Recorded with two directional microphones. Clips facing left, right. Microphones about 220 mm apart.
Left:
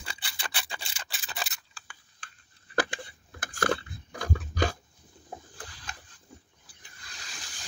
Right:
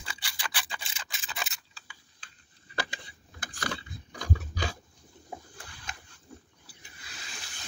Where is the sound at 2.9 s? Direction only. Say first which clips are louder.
Left 6 dB; 50° left (ahead or behind).